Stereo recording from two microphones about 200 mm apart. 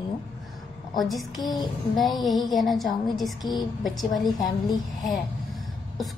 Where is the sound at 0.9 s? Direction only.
Centre (ahead or behind).